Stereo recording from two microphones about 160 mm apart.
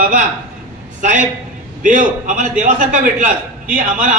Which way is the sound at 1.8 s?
55° right (ahead or behind).